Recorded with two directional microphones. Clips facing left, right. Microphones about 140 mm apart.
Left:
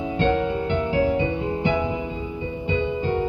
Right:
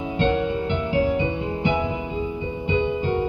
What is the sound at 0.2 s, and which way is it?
Music, 20° right (ahead or behind).